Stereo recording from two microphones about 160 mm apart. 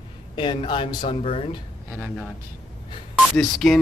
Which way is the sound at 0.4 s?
30° left (ahead or behind).